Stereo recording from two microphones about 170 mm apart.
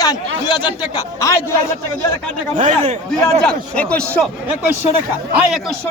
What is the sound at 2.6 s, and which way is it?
Speech, 45° right (ahead or behind).